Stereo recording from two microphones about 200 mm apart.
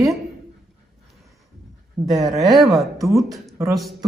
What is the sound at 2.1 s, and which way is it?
Speech, centre (ahead or behind).